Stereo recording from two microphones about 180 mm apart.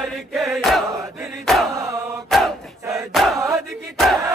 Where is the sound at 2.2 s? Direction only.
Centre (ahead or behind).